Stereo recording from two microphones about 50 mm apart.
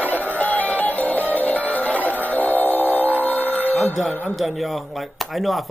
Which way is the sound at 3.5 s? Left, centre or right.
Left.